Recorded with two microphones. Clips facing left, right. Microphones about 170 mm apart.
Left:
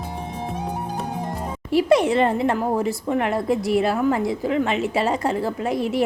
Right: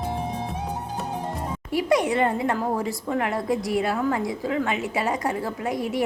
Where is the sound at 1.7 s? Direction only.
25° left (ahead or behind).